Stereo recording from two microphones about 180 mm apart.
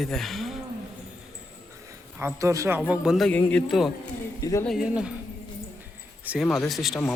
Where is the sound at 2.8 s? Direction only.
Centre (ahead or behind).